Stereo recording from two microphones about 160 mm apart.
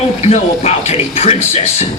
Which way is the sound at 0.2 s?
40° left (ahead or behind).